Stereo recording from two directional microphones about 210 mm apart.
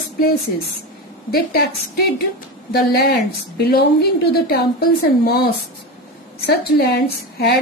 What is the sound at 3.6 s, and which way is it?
A woman's voice, 50° left (ahead or behind).